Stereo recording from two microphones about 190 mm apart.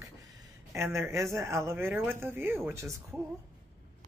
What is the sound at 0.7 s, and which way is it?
A man's voice, 10° right (ahead or behind).